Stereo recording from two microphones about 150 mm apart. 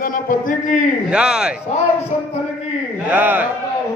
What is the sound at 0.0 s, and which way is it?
Speech, 65° left (ahead or behind).